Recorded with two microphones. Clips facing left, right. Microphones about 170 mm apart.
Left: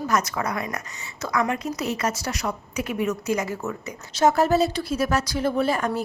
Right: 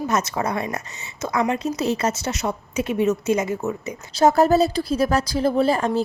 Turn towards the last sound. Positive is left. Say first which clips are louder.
# right 4 dB
turn(degrees=-30)  # may be behind; listen again after turning